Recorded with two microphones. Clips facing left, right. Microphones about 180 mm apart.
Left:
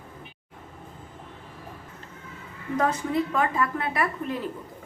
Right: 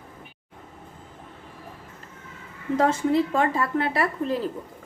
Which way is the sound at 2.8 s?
30° right (ahead or behind).